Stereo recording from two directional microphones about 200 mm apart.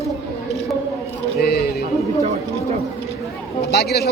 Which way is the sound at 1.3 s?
50° left (ahead or behind).